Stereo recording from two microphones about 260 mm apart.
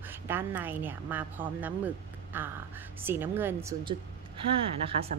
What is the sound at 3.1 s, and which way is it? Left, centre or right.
Speech, centre.